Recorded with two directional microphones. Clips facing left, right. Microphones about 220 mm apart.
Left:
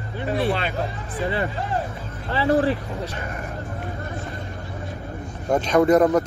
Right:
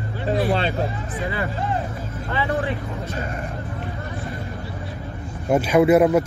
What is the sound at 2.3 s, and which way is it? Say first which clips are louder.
Speech: left 5 dB; 35° left (ahead or behind).